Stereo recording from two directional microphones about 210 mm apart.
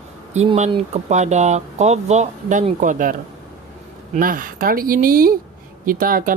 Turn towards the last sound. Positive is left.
turn(degrees=-40)  # may be behind; listen again after turning